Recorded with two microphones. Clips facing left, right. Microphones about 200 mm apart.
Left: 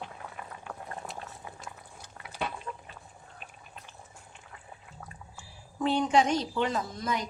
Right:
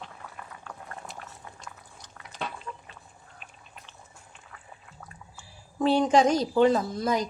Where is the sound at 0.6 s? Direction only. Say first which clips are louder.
Left 3 dB; 15° left (ahead or behind).